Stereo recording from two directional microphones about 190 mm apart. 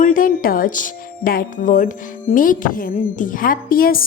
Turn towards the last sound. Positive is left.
turn(degrees=50)  # may be behind; listen again after turning